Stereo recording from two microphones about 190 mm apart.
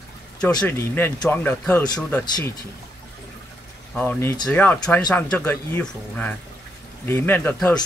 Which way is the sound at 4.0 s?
10° left (ahead or behind).